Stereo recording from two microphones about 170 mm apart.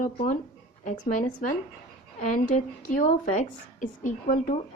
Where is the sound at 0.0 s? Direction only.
50° left (ahead or behind).